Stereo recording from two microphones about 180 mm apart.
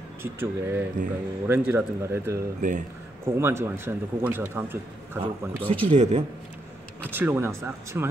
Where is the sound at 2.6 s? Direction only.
45° right (ahead or behind).